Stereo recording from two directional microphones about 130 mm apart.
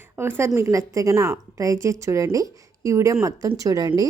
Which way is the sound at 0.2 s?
20° right (ahead or behind).